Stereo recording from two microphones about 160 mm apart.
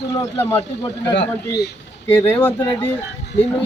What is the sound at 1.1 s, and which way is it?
Speech, 90° left.